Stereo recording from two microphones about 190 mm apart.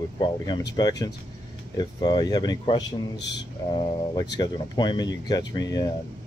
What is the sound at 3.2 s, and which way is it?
Speech, 65° left (ahead or behind).